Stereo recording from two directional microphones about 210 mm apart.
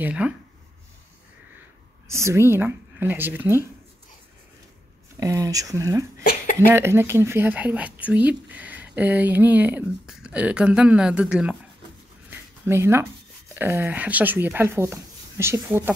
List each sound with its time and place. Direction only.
0.0 s speech: 5° right (ahead or behind)
2.0 s speech: 15° right (ahead or behind)
5.2 s speech: 15° right (ahead or behind)
12.3 s a sound: 10° right (ahead or behind)
13.6 s speech: 10° right (ahead or behind)